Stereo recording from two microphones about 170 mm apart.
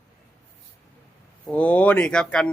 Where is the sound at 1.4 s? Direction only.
10° left (ahead or behind).